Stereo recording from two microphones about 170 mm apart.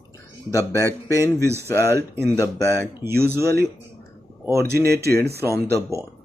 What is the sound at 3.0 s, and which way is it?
Speech, 15° right (ahead or behind).